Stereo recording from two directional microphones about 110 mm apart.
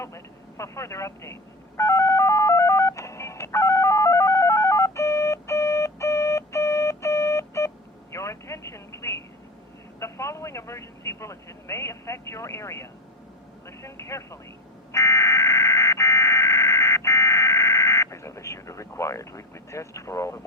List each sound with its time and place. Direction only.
0.0 s telephone dialing: 25° left (ahead or behind)
8.1 s telephone: 25° left (ahead or behind)
10.0 s speech: 25° left (ahead or behind)
14.9 s a sound: 25° left (ahead or behind)